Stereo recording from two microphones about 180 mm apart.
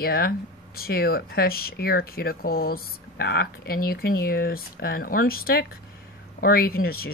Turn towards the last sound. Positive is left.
turn(degrees=55)  # may be behind; listen again after turning